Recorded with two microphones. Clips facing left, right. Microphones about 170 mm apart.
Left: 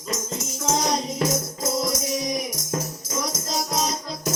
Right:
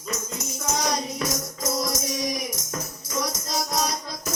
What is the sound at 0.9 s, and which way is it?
Music, 20° left (ahead or behind).